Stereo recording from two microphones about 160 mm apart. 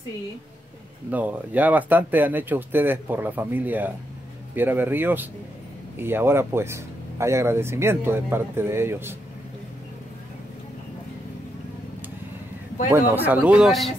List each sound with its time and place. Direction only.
1.1 s speech: 10° right (ahead or behind)
12.9 s speech: 10° right (ahead or behind)